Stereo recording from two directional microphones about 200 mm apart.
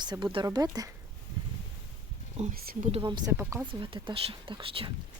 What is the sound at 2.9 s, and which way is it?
Speech, 25° right (ahead or behind).